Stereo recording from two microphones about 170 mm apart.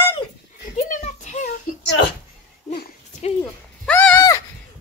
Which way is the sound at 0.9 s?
45° left (ahead or behind).